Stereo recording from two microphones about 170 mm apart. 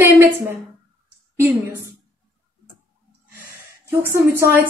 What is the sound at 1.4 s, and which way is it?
Speech, 10° right (ahead or behind).